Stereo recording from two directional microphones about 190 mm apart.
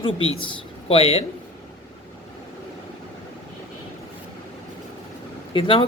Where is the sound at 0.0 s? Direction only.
30° left (ahead or behind).